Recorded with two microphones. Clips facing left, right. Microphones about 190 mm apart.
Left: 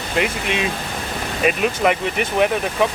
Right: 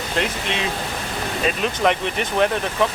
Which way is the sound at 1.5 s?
10° left (ahead or behind).